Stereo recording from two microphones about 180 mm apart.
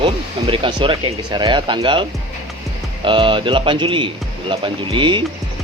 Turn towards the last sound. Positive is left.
turn(degrees=-25)  # may be behind; listen again after turning